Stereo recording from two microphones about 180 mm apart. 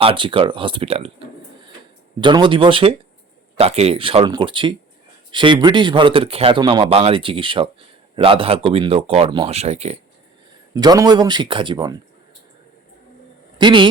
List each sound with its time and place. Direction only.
0.0 s a man's voice: 30° right (ahead or behind)
2.2 s a man's voice: 25° right (ahead or behind)
10.8 s a man's voice: 20° right (ahead or behind)
13.6 s a man's voice: 25° right (ahead or behind)